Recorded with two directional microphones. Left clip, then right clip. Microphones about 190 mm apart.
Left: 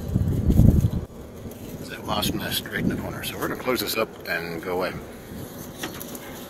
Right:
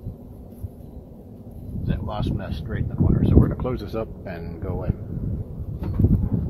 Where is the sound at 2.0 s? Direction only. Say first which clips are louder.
Left 6 dB; 10° left (ahead or behind).